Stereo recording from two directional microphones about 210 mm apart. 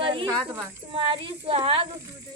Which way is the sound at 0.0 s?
25° right (ahead or behind).